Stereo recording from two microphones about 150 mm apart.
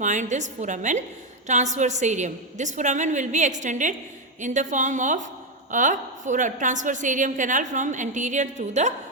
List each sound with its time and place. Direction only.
0.0 s a woman's voice: 55° right (ahead or behind)